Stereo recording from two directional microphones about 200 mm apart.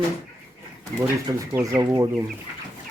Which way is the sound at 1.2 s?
15° right (ahead or behind).